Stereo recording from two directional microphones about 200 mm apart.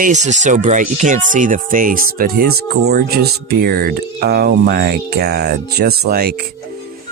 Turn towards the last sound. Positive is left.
turn(degrees=-50)  # may be behind; listen again after turning